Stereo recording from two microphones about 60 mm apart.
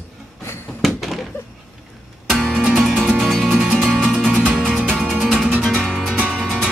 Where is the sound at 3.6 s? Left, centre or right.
Centre.